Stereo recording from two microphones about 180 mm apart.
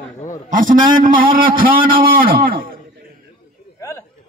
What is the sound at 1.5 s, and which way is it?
A man's voice, 50° right (ahead or behind).